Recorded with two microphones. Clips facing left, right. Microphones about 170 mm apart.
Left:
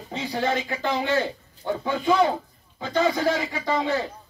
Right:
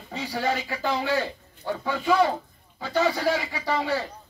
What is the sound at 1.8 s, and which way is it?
Speech, 20° left (ahead or behind).